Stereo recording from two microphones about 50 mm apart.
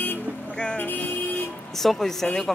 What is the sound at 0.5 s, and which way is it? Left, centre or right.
Speech, centre.